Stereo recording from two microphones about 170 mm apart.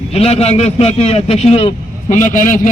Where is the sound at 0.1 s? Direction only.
40° left (ahead or behind).